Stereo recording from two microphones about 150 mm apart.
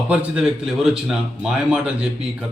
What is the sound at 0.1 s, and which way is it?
A man's voice, 5° right (ahead or behind).